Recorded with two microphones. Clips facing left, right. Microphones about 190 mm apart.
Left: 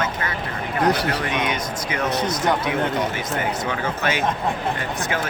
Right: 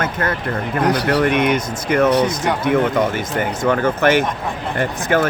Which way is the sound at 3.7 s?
55° right (ahead or behind).